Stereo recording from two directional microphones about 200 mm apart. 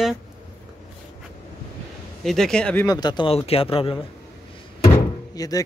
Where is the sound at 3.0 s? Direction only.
20° left (ahead or behind).